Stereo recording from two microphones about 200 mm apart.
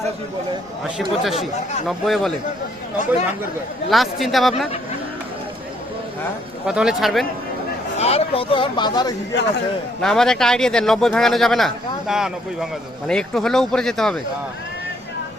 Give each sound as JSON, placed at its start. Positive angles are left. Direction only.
{"t": 0.9, "sound": "speech", "side_deg": 0}
{"t": 3.8, "sound": "speech", "side_deg": 0}
{"t": 6.7, "sound": "speech", "side_deg": -5}
{"t": 7.9, "sound": "speech", "side_deg": 30}
{"t": 10.0, "sound": "speech", "side_deg": 5}